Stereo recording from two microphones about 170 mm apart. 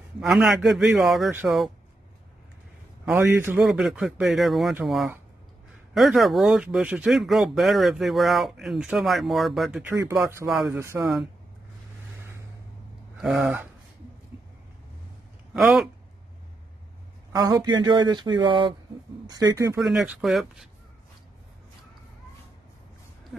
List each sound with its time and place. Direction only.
0.2 s speech: centre (ahead or behind)
3.1 s speech: 10° right (ahead or behind)
13.2 s speech: 5° right (ahead or behind)
15.5 s speech: centre (ahead or behind)
17.3 s speech: 20° right (ahead or behind)
19.8 s speech: centre (ahead or behind)